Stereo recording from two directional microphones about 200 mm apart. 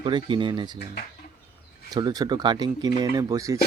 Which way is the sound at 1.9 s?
20° right (ahead or behind).